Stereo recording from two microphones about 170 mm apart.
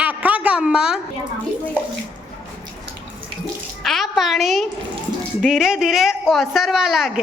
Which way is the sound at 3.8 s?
Centre (ahead or behind).